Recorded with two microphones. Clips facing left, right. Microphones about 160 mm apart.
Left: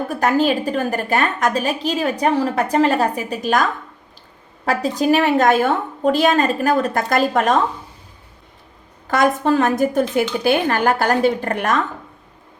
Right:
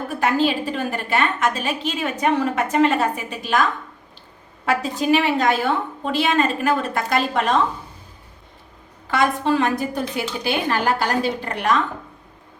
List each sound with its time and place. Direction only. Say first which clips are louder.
0.1 s a woman's voice: left 2 dB; 45° left (ahead or behind)
9.0 s a woman's voice: left 3 dB; 45° left (ahead or behind)